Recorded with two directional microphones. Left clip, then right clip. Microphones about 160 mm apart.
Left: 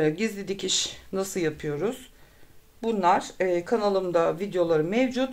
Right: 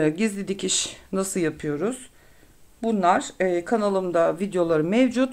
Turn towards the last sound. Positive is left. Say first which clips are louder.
# right 3 dB
turn(degrees=-35)  # may be behind; listen again after turning